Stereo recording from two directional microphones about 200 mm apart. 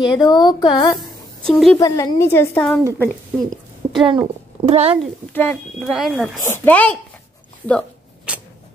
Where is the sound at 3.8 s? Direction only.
10° right (ahead or behind).